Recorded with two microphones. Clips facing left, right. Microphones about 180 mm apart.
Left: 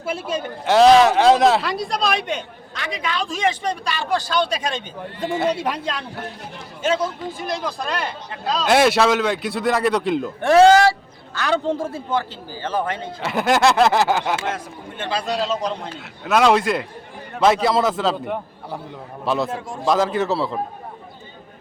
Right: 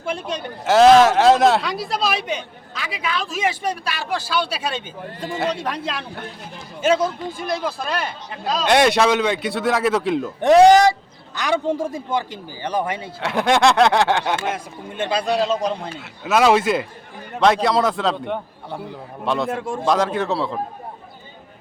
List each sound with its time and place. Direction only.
0.0 s speech: 5° left (ahead or behind)
5.2 s speech: 5° left (ahead or behind)
5.8 s speech: 5° right (ahead or behind)
8.6 s speech: centre (ahead or behind)
10.4 s speech: 15° right (ahead or behind)
13.2 s speech: centre (ahead or behind)
14.4 s speech: 15° right (ahead or behind)
15.3 s speech: 5° right (ahead or behind)
19.5 s a man's voice: 60° right (ahead or behind)
19.8 s speech: centre (ahead or behind)